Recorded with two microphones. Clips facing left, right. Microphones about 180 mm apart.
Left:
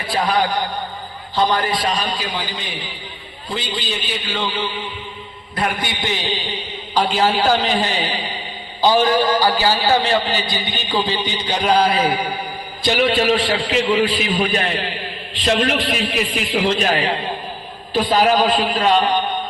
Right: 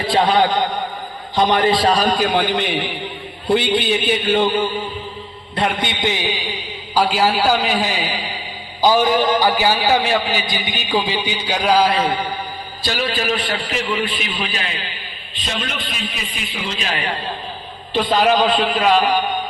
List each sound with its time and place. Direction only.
0.1 s a man's voice: 25° right (ahead or behind); by 4.7 s 50° right (ahead or behind)
5.5 s a man's voice: 25° right (ahead or behind); by 12.0 s 5° right (ahead or behind)
12.8 s a man's voice: 20° left (ahead or behind); by 16.9 s 60° left (ahead or behind)
16.9 s a man's voice: 30° left (ahead or behind)
18.1 s a man's voice: 5° left (ahead or behind)